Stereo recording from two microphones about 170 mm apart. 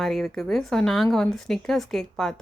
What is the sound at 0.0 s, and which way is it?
A woman's voice, centre (ahead or behind).